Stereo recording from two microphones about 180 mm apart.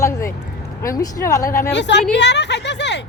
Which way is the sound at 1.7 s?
75° left (ahead or behind).